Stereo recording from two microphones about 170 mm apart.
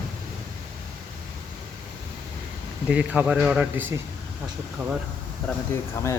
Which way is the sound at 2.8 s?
5° right (ahead or behind).